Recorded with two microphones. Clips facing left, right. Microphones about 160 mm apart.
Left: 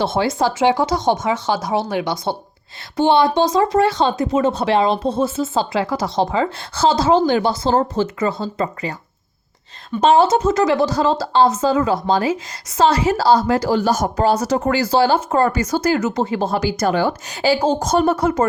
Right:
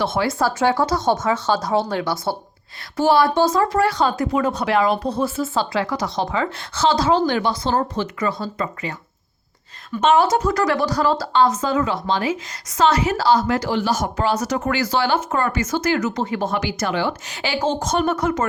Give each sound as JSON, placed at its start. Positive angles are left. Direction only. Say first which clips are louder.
{"t": 0.0, "sound": "a woman's voice", "louder": "left 2 dB", "side_deg": 30}